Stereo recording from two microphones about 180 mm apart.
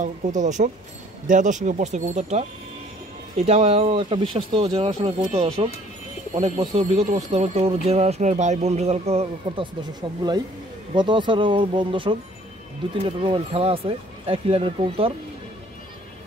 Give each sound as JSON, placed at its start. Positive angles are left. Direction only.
{"t": 0.0, "sound": "speech", "side_deg": -45}
{"t": 11.0, "sound": "speech", "side_deg": -25}